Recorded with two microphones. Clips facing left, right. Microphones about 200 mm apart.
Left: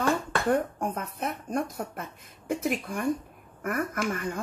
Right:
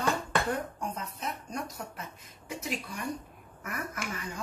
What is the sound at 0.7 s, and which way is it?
Speech, 55° left (ahead or behind).